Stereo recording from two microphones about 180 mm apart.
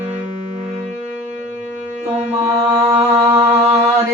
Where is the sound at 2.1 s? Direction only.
35° right (ahead or behind).